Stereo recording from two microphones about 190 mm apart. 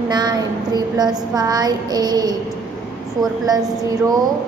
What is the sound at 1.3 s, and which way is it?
A woman's voice, 20° right (ahead or behind).